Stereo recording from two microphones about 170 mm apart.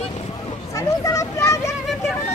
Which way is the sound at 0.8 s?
20° left (ahead or behind).